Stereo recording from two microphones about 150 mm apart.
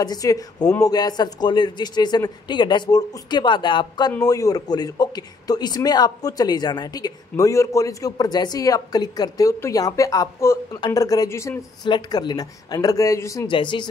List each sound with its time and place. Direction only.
0.0 s a man's voice: 25° left (ahead or behind)
13.5 s speech: 35° left (ahead or behind)